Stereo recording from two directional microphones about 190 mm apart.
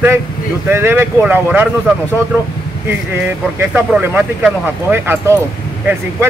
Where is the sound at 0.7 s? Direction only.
10° right (ahead or behind).